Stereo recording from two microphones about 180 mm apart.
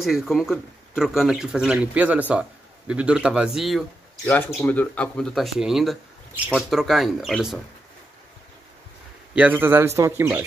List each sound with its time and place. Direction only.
0.0 s speech: centre (ahead or behind)
9.3 s a man's voice: 10° right (ahead or behind)